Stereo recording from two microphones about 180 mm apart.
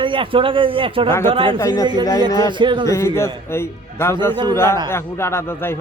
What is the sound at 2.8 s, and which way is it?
A man's voice, 15° left (ahead or behind).